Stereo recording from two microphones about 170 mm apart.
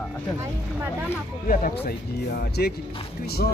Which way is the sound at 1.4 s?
60° left (ahead or behind).